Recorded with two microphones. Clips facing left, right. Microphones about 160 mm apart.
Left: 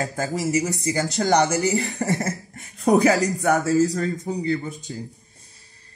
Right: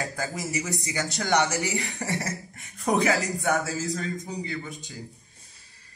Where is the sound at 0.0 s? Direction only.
40° left (ahead or behind).